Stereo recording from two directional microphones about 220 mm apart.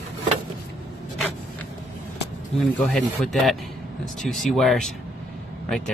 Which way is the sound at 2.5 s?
Centre (ahead or behind).